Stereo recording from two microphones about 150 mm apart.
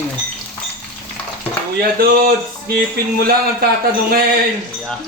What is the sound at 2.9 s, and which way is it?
Speech, 90° right.